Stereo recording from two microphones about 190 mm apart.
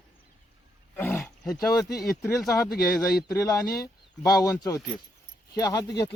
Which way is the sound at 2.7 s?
55° left (ahead or behind).